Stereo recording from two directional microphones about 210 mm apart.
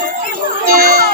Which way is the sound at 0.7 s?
45° right (ahead or behind).